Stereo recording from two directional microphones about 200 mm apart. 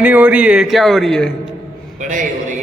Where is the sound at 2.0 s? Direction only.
40° right (ahead or behind).